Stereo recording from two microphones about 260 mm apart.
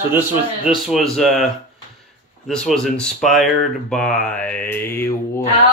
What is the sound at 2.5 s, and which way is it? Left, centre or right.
Speech, centre.